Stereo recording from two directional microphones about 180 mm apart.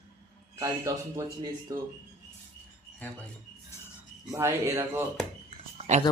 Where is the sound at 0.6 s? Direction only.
20° right (ahead or behind).